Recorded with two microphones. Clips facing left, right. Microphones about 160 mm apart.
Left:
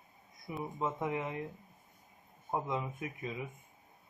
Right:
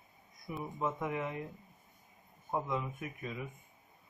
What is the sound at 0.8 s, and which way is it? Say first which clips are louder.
Speech: even; 20° left (ahead or behind).